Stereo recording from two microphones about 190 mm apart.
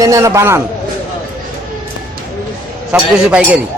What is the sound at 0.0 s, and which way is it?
Speech, 15° right (ahead or behind).